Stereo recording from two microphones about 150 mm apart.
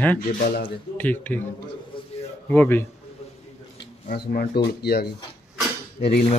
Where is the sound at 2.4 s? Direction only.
15° left (ahead or behind).